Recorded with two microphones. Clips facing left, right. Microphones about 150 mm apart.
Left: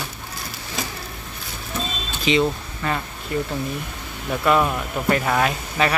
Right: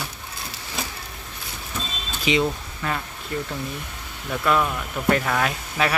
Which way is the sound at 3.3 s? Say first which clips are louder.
Left 4 dB; 10° left (ahead or behind).